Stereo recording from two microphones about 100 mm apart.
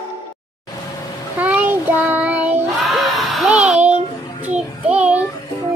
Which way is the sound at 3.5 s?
10° right (ahead or behind).